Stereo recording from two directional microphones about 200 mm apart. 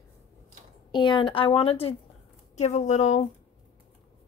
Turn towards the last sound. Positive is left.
turn(degrees=35)  # may be behind; listen again after turning